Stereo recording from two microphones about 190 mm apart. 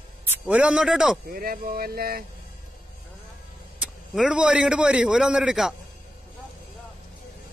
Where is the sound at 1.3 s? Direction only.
50° right (ahead or behind).